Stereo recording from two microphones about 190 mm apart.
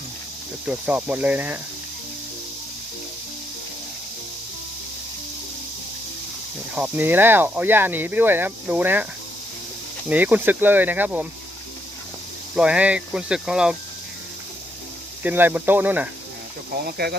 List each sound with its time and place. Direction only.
0.6 s speech: 5° right (ahead or behind)
6.7 s speech: 10° right (ahead or behind)
10.1 s speech: 10° right (ahead or behind)
12.5 s speech: 5° right (ahead or behind)
15.2 s speech: 10° right (ahead or behind)
16.8 s speech: 55° right (ahead or behind)